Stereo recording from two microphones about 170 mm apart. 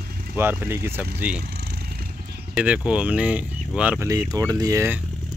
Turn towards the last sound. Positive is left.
turn(degrees=-15)  # may be behind; listen again after turning